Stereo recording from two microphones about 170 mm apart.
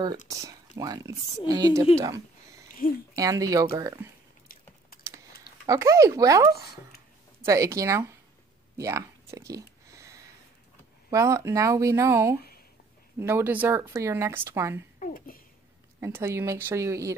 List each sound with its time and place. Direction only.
0.3 s speech: 20° right (ahead or behind)
2.8 s speech: 55° left (ahead or behind)
3.2 s speech: 20° right (ahead or behind)
5.7 s speech: 20° right (ahead or behind)
8.7 s a sound: 20° right (ahead or behind)
11.1 s speech: 20° right (ahead or behind)
15.0 s a sound: 55° left (ahead or behind)
16.0 s speech: 15° right (ahead or behind)